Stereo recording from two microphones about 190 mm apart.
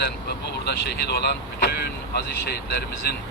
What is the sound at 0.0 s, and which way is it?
A man's voice, 60° left (ahead or behind).